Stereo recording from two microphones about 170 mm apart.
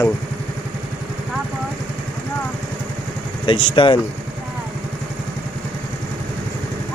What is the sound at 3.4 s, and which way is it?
Speech, 30° left (ahead or behind).